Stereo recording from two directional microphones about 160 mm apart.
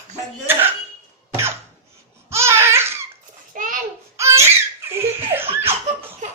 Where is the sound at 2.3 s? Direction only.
15° right (ahead or behind).